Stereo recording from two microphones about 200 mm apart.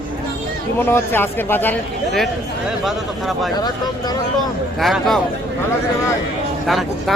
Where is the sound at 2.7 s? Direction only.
Centre (ahead or behind).